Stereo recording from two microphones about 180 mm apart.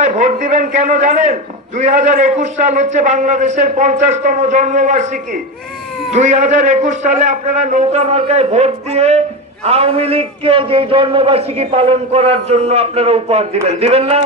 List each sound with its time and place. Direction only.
0.0 s a man's voice: 40° right (ahead or behind)